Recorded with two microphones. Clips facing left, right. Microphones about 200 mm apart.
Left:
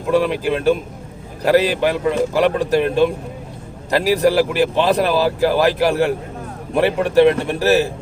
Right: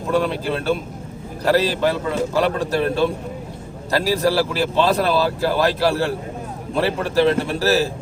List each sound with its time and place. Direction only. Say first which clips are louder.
0.1 s speech: left 4 dB; 15° left (ahead or behind)